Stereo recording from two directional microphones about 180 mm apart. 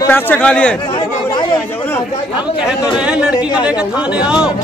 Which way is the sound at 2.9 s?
5° right (ahead or behind).